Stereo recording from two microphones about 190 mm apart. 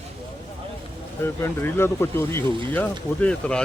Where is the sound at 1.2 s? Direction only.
10° left (ahead or behind).